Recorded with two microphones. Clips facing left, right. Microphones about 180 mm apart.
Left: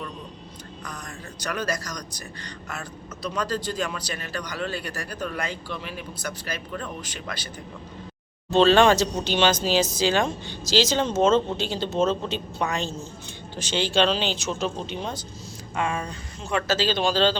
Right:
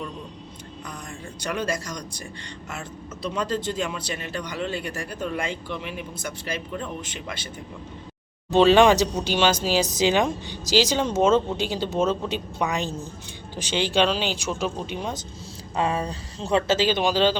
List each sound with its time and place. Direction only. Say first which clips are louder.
1.4 s a man's voice: right 1 dB; 25° right (ahead or behind)
3.2 s a man's voice: right 1 dB; 25° right (ahead or behind)
8.4 s speech: right 1 dB; 15° right (ahead or behind)
15.7 s a man's voice: right 3 dB; 35° right (ahead or behind); by 17.3 s 15° right (ahead or behind)